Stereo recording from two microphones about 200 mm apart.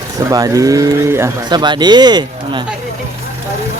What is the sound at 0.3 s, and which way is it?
Speech, 15° right (ahead or behind).